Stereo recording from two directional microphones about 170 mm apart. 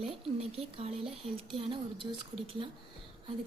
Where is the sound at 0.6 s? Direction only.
35° right (ahead or behind).